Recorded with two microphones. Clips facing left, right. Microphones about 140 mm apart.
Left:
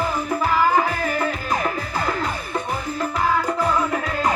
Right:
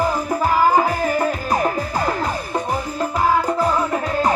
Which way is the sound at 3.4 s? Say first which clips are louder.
Right 2 dB; 30° right (ahead or behind).